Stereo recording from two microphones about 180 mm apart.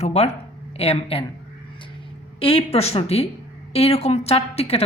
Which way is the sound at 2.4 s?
30° left (ahead or behind).